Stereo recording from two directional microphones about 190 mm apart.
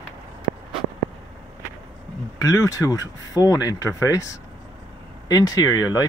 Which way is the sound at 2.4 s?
15° left (ahead or behind).